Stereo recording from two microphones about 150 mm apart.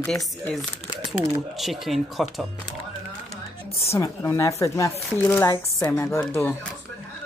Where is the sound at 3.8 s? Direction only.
20° left (ahead or behind).